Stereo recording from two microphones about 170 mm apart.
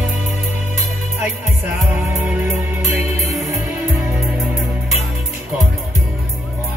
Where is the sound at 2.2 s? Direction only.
15° right (ahead or behind).